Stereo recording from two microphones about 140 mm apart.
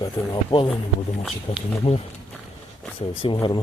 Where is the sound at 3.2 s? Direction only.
35° left (ahead or behind).